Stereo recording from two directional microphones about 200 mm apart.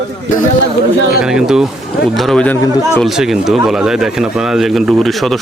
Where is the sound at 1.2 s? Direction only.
5° right (ahead or behind).